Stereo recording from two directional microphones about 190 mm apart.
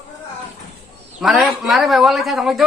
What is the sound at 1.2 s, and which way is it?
Speech, centre (ahead or behind).